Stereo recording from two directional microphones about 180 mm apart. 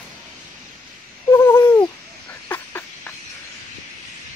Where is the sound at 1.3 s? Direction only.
15° left (ahead or behind).